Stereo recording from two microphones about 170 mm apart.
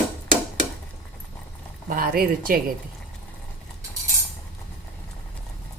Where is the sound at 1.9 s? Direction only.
60° right (ahead or behind).